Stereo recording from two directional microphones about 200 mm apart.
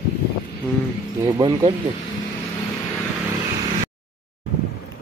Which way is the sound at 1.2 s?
20° right (ahead or behind).